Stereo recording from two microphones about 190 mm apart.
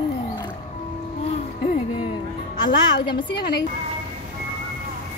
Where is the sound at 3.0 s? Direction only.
25° left (ahead or behind).